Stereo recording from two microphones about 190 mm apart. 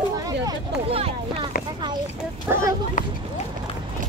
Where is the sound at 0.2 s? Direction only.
25° right (ahead or behind).